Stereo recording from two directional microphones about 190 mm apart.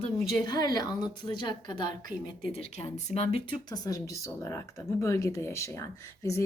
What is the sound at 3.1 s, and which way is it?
Speech, 35° left (ahead or behind).